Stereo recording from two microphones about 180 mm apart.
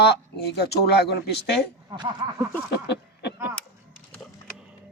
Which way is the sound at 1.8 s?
25° right (ahead or behind).